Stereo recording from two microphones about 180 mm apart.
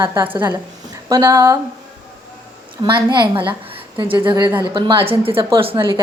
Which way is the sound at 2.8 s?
25° right (ahead or behind).